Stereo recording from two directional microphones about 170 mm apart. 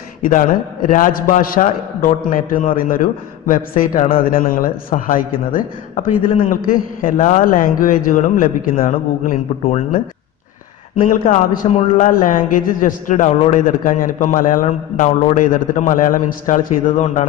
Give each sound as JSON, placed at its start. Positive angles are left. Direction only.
{"t": 0.8, "sound": "a man's voice", "side_deg": 50}
{"t": 11.2, "sound": "a man's voice", "side_deg": 50}